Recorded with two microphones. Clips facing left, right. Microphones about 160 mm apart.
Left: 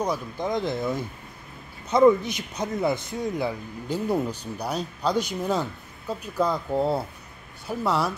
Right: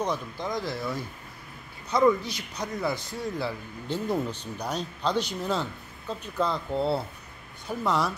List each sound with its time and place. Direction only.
0.0 s a man's voice: 10° left (ahead or behind)
0.5 s a man's voice: 20° left (ahead or behind)